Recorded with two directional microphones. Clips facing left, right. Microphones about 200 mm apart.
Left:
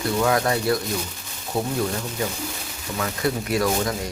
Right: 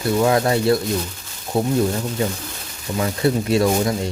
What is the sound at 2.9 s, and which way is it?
Speech, 30° right (ahead or behind).